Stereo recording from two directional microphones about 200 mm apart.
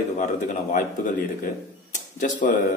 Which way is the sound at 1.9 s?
40° left (ahead or behind).